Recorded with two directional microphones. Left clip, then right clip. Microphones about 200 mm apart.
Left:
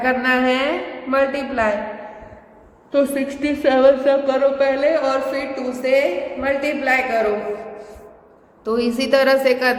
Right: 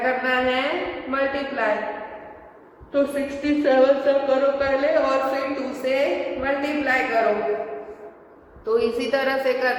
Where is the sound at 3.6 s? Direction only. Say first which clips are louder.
Left 3 dB; 55° left (ahead or behind).